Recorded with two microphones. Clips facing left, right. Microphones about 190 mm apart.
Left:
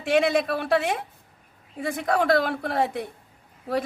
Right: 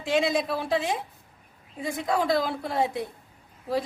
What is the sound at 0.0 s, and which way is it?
Speech, 60° left (ahead or behind).